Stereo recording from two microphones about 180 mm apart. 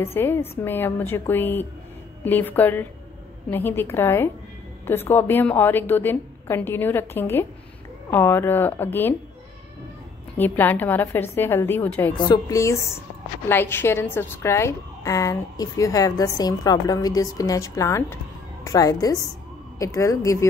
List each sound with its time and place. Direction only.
0.0 s a woman's voice: 15° left (ahead or behind)
10.3 s a woman's voice: 10° left (ahead or behind)
12.2 s a woman's voice: 20° left (ahead or behind)